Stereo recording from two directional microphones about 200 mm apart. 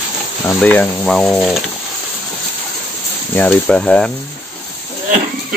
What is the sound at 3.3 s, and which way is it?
Speech, 5° left (ahead or behind).